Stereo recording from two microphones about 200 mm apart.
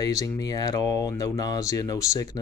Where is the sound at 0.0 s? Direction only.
15° left (ahead or behind).